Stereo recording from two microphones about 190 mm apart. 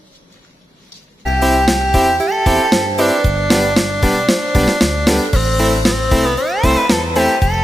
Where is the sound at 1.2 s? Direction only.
Centre (ahead or behind).